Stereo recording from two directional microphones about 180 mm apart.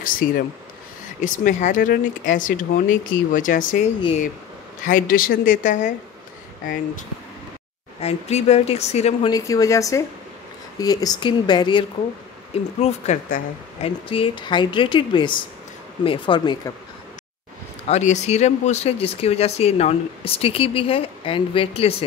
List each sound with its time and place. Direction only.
0.2 s speech: 70° left (ahead or behind)
1.2 s speech: 45° left (ahead or behind)
4.8 s speech: 50° left (ahead or behind)
8.0 s speech: 35° left (ahead or behind)
9.3 s speech: 20° left (ahead or behind)
12.8 s speech: 40° left (ahead or behind)
17.8 s speech: 40° left (ahead or behind)